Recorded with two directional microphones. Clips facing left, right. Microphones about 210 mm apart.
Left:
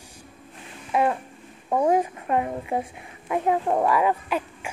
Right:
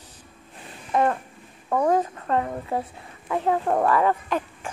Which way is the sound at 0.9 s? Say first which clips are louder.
Right 1 dB; 10° left (ahead or behind).